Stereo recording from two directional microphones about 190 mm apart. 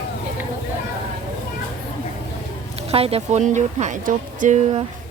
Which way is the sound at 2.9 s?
30° right (ahead or behind).